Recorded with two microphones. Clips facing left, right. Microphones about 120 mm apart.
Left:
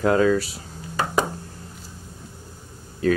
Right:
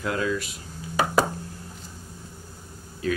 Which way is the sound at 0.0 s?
40° left (ahead or behind).